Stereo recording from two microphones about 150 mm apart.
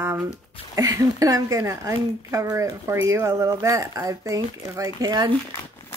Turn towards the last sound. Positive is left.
turn(degrees=-25)  # may be behind; listen again after turning